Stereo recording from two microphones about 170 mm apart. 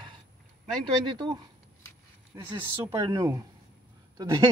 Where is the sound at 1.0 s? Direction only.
25° right (ahead or behind).